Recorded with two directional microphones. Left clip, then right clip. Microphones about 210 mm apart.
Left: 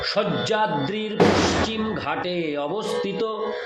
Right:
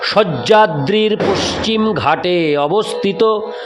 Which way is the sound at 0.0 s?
50° right (ahead or behind).